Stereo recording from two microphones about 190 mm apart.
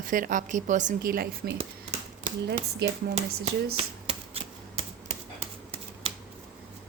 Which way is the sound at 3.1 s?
35° right (ahead or behind).